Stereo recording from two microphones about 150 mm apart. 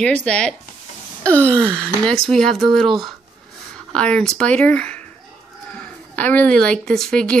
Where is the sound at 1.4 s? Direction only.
15° right (ahead or behind).